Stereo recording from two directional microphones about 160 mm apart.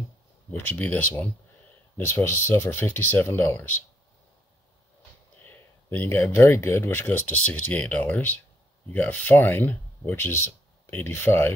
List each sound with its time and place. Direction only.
0.5 s speech: 10° left (ahead or behind)
5.4 s speech: 10° left (ahead or behind)